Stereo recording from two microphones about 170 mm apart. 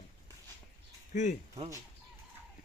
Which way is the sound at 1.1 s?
45° left (ahead or behind).